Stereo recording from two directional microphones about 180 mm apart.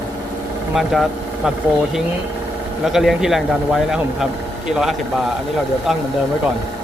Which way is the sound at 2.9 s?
Centre (ahead or behind).